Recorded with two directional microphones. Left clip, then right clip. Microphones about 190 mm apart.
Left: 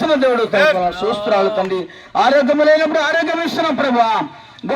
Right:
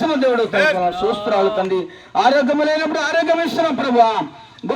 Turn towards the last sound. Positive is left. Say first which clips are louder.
# even
turn(degrees=20)  # may be behind; listen again after turning